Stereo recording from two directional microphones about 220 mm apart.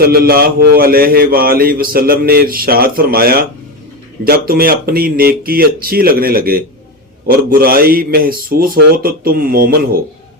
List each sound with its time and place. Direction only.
0.0 s a man's voice: 45° right (ahead or behind)